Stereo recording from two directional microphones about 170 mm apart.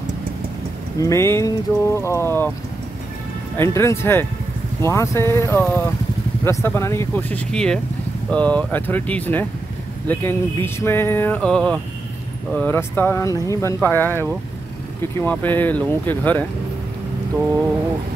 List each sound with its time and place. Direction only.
0.9 s speech: 20° left (ahead or behind)
3.5 s speech: 15° left (ahead or behind)